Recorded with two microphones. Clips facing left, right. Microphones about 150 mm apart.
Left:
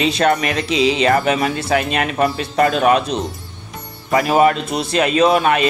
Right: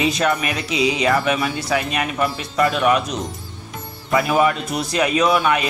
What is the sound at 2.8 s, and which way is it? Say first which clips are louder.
Speech: left 3 dB; 30° left (ahead or behind).